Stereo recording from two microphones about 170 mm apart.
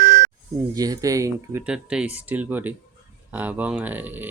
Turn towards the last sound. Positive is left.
turn(degrees=-10)  # may be behind; listen again after turning